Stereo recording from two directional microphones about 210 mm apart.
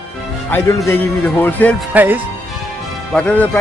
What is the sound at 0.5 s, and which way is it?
Speech, 10° left (ahead or behind).